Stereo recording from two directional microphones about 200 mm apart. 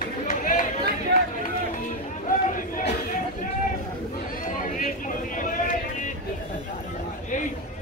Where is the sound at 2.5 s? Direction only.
40° left (ahead or behind).